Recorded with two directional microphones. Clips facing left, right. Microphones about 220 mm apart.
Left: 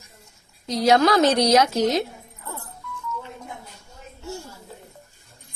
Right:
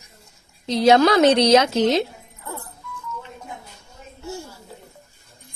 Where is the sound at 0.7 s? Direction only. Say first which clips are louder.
Right 3 dB; 25° right (ahead or behind).